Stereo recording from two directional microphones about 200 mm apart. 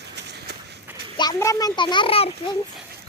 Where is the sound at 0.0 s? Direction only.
55° right (ahead or behind).